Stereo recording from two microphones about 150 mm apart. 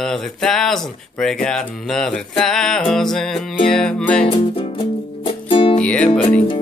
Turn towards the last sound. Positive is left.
turn(degrees=10)  # may be behind; listen again after turning